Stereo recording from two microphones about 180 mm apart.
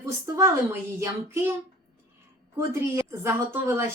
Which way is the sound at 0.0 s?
15° right (ahead or behind).